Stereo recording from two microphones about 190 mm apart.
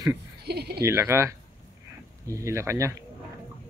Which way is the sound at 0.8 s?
15° right (ahead or behind).